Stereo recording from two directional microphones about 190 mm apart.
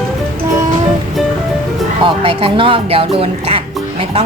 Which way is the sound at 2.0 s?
30° right (ahead or behind).